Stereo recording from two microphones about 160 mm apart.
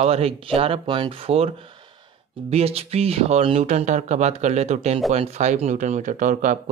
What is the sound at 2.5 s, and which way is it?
Speech, 40° right (ahead or behind).